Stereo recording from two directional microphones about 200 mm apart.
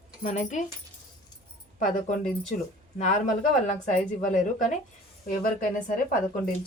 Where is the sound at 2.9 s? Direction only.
35° left (ahead or behind).